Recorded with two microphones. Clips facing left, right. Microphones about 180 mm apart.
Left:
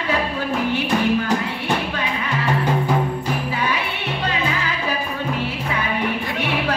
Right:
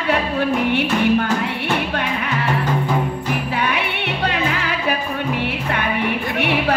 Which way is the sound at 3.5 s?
65° right (ahead or behind).